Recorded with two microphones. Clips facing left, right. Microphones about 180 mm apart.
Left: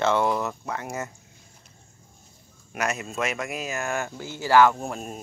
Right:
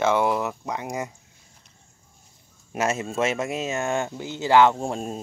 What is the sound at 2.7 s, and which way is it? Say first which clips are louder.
Speech: right 4 dB; 25° right (ahead or behind).